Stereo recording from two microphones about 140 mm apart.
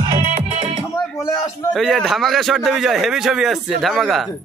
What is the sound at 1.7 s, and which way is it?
A man's voice, centre (ahead or behind).